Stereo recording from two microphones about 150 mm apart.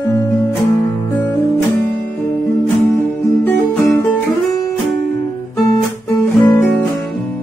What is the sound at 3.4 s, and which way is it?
Music, 15° left (ahead or behind).